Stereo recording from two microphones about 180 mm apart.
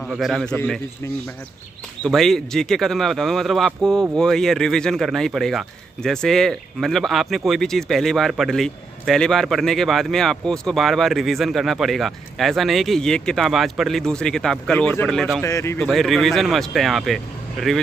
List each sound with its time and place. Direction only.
0.1 s speech: centre (ahead or behind)
2.0 s speech: centre (ahead or behind)
15.4 s speech: 15° left (ahead or behind)
15.9 s speech: centre (ahead or behind)